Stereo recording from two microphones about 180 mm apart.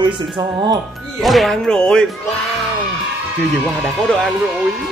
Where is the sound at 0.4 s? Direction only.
20° right (ahead or behind).